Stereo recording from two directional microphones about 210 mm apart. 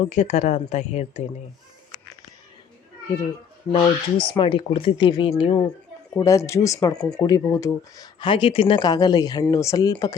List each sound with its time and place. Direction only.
0.0 s speech: 35° left (ahead or behind)
3.7 s speech: 20° left (ahead or behind)
6.1 s speech: 15° left (ahead or behind)
6.9 s speech: 5° left (ahead or behind)
7.2 s speech: 15° left (ahead or behind)